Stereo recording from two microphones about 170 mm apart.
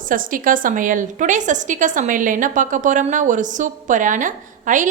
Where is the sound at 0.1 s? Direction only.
55° right (ahead or behind).